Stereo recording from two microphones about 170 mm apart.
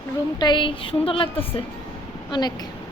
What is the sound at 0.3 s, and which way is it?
Speech, 25° left (ahead or behind).